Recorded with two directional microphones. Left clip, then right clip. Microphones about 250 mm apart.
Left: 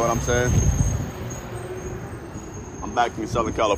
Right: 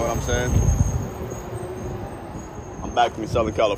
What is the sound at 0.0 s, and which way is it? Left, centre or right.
Cricket, centre.